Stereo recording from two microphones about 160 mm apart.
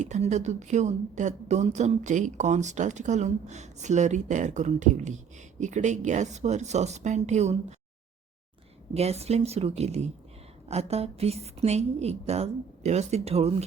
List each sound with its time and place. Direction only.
0.0 s a woman's voice: 45° right (ahead or behind)
8.9 s a woman's voice: 40° right (ahead or behind)